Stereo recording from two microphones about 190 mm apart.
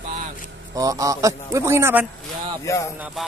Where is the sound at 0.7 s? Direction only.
15° right (ahead or behind).